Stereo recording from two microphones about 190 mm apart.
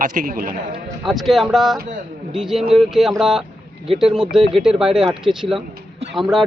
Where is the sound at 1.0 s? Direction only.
Centre (ahead or behind).